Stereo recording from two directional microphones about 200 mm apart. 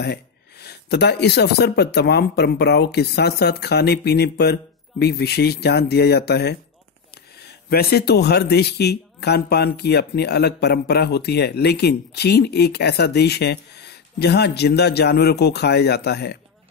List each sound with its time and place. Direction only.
0.0 s speech: 55° left (ahead or behind)